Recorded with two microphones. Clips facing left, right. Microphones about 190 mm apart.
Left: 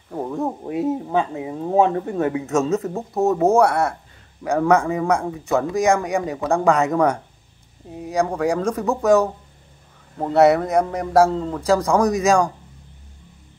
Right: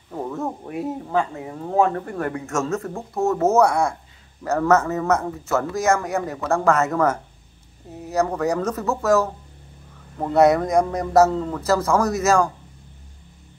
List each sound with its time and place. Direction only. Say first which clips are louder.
0.1 s a man's voice: left 3 dB; 15° left (ahead or behind)